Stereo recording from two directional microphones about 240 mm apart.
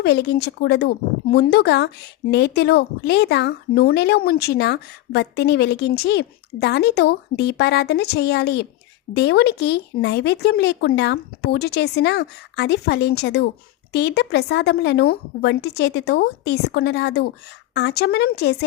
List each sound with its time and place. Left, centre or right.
0.0 s speech: left